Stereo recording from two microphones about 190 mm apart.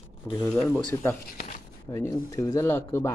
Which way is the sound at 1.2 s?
50° left (ahead or behind).